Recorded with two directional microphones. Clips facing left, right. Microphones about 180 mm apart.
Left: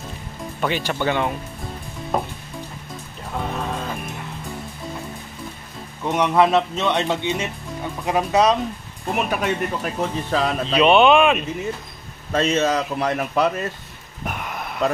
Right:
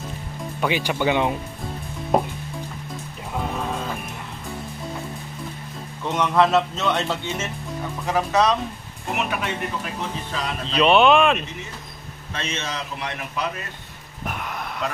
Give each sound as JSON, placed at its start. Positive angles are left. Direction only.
{"t": 0.6, "sound": "speech", "side_deg": -10}
{"t": 3.3, "sound": "music", "side_deg": 0}
{"t": 6.0, "sound": "speech", "side_deg": 10}
{"t": 9.1, "sound": "speech", "side_deg": 40}
{"t": 10.8, "sound": "speech", "side_deg": 0}
{"t": 12.3, "sound": "speech", "side_deg": 45}
{"t": 14.2, "sound": "a sound", "side_deg": 0}